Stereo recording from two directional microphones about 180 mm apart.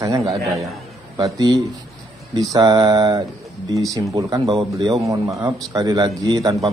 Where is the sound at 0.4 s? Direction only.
Centre (ahead or behind).